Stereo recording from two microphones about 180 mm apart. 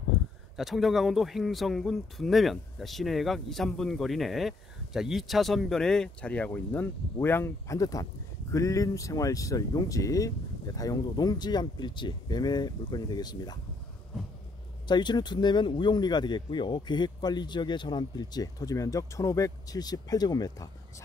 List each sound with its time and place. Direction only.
0.6 s speech: centre (ahead or behind); by 13.6 s 20° left (ahead or behind)
14.9 s speech: 25° left (ahead or behind)